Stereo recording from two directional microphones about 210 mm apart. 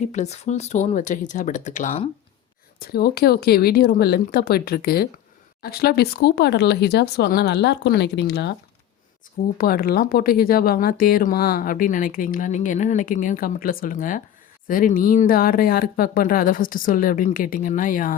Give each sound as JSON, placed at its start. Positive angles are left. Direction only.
{"t": 0.1, "sound": "speech", "side_deg": 35}
{"t": 2.9, "sound": "speech", "side_deg": 50}
{"t": 9.6, "sound": "speech", "side_deg": 45}